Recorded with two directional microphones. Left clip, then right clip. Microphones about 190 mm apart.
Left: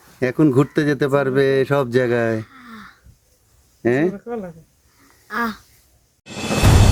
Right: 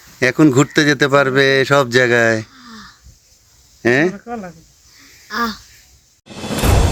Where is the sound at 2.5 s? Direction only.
35° left (ahead or behind).